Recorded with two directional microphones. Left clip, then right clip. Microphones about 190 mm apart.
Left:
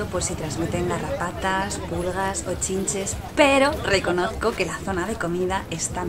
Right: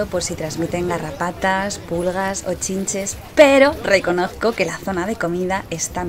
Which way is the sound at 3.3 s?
25° right (ahead or behind).